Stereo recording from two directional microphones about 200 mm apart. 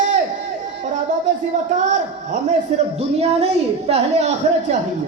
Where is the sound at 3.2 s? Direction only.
30° right (ahead or behind).